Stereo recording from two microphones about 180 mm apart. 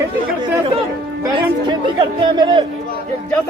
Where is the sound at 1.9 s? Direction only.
25° right (ahead or behind).